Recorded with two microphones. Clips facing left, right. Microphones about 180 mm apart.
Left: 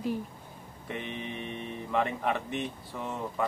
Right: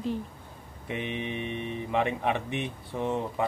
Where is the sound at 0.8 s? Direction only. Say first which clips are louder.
Right 4 dB; 15° right (ahead or behind).